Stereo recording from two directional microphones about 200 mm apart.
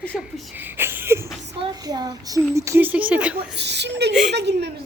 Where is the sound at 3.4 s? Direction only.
60° right (ahead or behind).